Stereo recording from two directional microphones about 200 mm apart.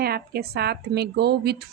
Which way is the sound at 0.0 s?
50° right (ahead or behind).